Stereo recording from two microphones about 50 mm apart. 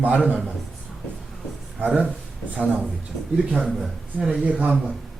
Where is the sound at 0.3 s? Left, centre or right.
Right.